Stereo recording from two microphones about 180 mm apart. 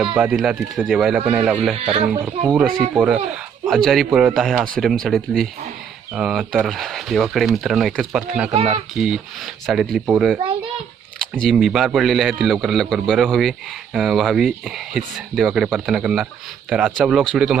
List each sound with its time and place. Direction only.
0.2 s speech: 5° right (ahead or behind)
1.7 s speech: 35° right (ahead or behind)
2.2 s speech: 10° right (ahead or behind)
8.5 s speech: 35° right (ahead or behind)
9.0 s speech: 5° right (ahead or behind)
10.3 s a child's voice: 30° right (ahead or behind)
11.2 s speech: centre (ahead or behind)